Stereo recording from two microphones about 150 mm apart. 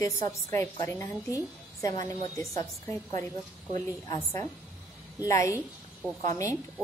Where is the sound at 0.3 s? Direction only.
20° left (ahead or behind).